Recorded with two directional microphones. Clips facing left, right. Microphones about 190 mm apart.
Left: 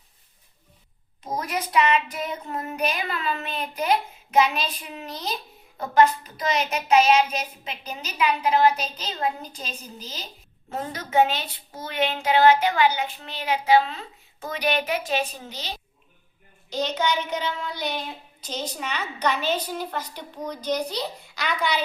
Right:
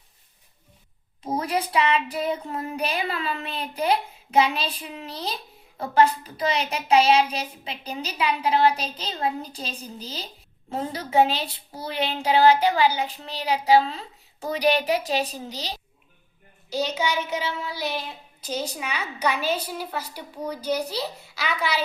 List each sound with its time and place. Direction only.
1.3 s child singing: 30° right (ahead or behind)
16.6 s a child's voice: 10° right (ahead or behind)